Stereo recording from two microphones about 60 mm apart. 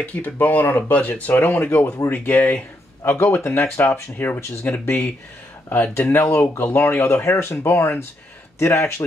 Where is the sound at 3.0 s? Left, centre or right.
Left.